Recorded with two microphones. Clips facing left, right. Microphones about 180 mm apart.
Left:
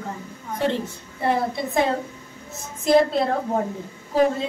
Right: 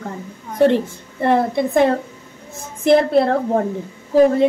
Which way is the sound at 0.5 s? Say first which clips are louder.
Right 9 dB; 55° right (ahead or behind).